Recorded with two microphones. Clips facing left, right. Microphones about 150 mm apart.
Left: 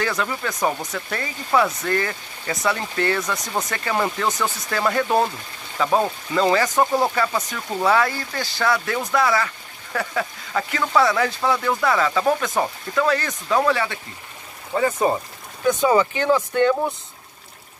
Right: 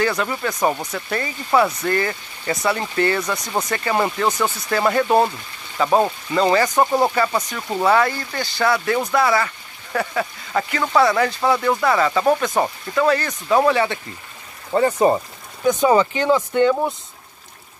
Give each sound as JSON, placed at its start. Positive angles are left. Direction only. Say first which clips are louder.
{"t": 0.0, "sound": "speech", "louder": "right 3 dB", "side_deg": -5}
{"t": 7.3, "sound": "speech", "louder": "right 2 dB", "side_deg": -15}
{"t": 7.8, "sound": "speech", "louder": "right 2 dB", "side_deg": 0}
{"t": 13.6, "sound": "speech", "louder": "right 3 dB", "side_deg": -25}